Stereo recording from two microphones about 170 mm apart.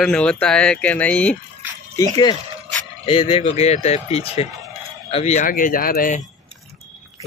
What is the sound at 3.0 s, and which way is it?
Speech, 30° left (ahead or behind).